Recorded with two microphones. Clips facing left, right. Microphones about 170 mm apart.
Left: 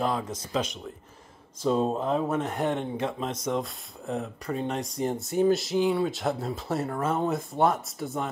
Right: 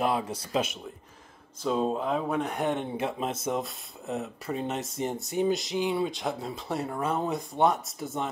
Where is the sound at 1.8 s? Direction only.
Centre (ahead or behind).